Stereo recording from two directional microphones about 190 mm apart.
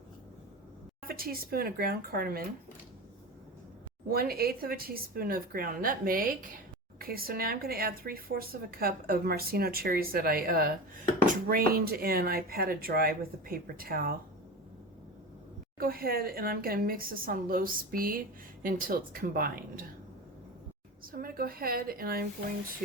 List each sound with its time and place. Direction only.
1.0 s speech: 50° right (ahead or behind)
4.1 s speech: 50° right (ahead or behind)
15.8 s speech: 50° right (ahead or behind)
21.0 s speech: 50° right (ahead or behind)